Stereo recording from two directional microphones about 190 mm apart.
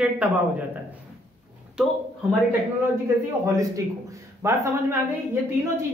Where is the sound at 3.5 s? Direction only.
15° right (ahead or behind).